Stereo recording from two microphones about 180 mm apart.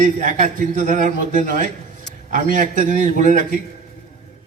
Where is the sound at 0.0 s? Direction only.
45° right (ahead or behind).